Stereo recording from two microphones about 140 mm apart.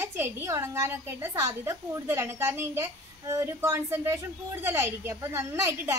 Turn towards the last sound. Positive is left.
turn(degrees=-15)  # may be behind; listen again after turning